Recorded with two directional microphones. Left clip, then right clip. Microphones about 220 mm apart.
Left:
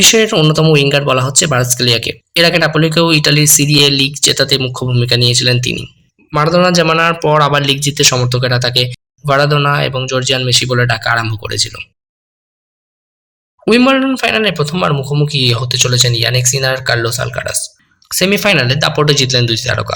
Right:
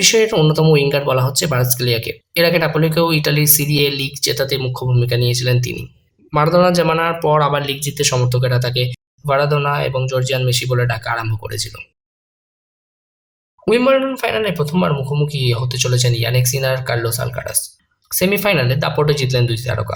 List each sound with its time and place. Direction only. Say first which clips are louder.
0.0 s speech: left 4 dB; 15° left (ahead or behind)
13.7 s speech: left 3 dB; 20° left (ahead or behind)